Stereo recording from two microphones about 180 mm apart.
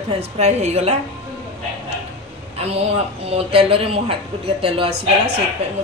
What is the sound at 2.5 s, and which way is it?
A woman's voice, 35° right (ahead or behind).